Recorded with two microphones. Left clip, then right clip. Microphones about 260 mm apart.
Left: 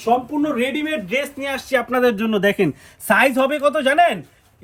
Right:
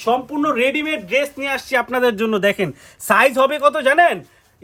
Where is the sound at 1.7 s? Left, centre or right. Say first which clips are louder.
Left 1 dB; right.